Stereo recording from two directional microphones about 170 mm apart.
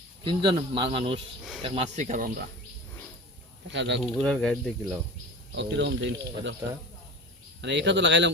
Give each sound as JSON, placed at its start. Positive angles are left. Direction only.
{"t": 0.3, "sound": "speech", "side_deg": -30}
{"t": 3.7, "sound": "speech", "side_deg": -90}
{"t": 4.0, "sound": "cricket", "side_deg": 0}
{"t": 5.7, "sound": "speech", "side_deg": -90}
{"t": 7.6, "sound": "speech", "side_deg": -90}